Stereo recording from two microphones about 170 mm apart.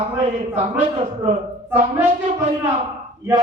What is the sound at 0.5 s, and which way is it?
Speech, 35° right (ahead or behind).